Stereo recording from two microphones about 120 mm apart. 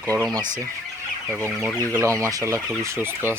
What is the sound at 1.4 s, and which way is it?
Speech, 15° right (ahead or behind).